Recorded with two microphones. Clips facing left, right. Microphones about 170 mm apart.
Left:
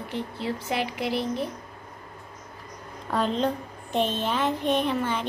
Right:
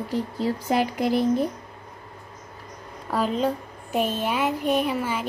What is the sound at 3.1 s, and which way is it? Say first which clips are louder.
A woman's voice: right 1 dB; 5° right (ahead or behind).